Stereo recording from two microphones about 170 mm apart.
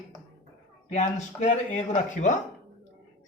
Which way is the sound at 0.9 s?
45° left (ahead or behind).